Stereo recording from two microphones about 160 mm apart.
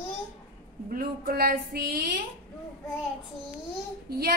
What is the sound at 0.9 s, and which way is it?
A woman's voice, 70° right (ahead or behind).